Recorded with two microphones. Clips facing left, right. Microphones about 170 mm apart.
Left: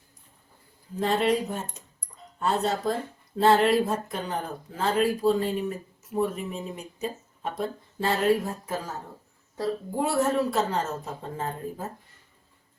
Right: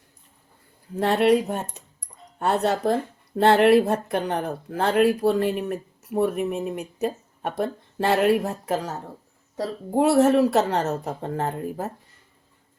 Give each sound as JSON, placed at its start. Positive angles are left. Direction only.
{"t": 0.9, "sound": "speech", "side_deg": -70}